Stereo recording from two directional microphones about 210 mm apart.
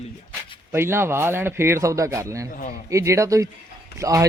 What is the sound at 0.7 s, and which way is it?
Speech, 10° right (ahead or behind).